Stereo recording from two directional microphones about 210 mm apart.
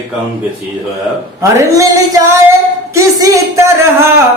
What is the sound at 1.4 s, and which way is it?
Speech, 15° right (ahead or behind).